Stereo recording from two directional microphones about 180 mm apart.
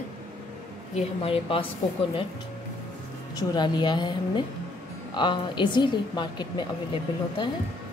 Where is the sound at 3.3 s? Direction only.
25° left (ahead or behind).